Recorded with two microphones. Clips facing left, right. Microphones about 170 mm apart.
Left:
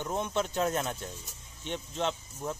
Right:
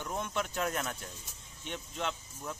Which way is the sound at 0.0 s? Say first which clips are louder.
Left 4 dB; 25° left (ahead or behind).